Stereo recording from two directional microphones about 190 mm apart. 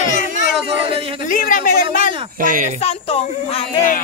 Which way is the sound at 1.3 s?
45° left (ahead or behind).